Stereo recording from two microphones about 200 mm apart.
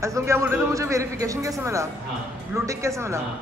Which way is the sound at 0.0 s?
15° right (ahead or behind).